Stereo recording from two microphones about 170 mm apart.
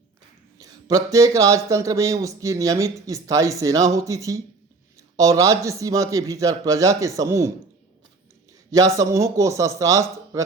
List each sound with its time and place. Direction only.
0.6 s speech: 20° right (ahead or behind)
9.0 s speech: 15° right (ahead or behind)